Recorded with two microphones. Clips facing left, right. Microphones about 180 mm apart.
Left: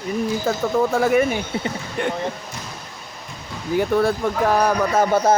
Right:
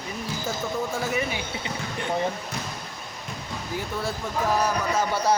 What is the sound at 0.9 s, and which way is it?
Speech, 60° left (ahead or behind).